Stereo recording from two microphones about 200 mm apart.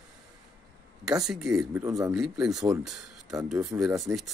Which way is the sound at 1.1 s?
5° right (ahead or behind).